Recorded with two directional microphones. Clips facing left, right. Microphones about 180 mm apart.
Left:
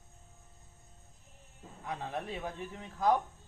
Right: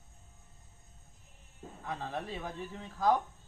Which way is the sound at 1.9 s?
20° left (ahead or behind).